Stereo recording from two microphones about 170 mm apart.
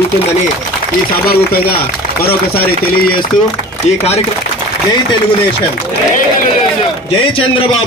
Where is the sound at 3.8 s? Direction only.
40° left (ahead or behind).